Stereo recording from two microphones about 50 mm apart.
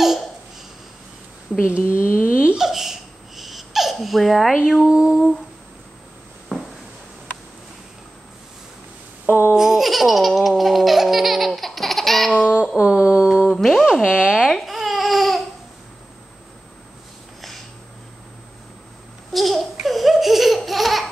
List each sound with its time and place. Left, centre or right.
1.7 s speech: right
2.2 s hiccup: right
2.6 s laughter: centre
4.7 s speech: centre
6.5 s a sound: centre
9.2 s speech: right
9.6 s baby laughter: centre
12.7 s a sound: centre
13.6 s a sound: centre
13.8 s a sound: centre
14.4 s babbling: centre
19.3 s laughter: centre